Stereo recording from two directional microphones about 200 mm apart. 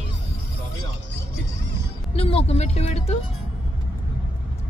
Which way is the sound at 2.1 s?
30° left (ahead or behind).